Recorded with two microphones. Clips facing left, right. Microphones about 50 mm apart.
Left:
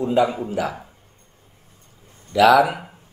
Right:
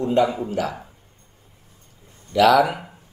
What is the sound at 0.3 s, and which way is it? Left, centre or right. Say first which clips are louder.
Speech: even; centre.